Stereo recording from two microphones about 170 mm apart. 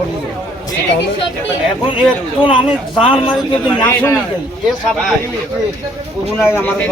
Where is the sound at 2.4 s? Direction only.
30° left (ahead or behind).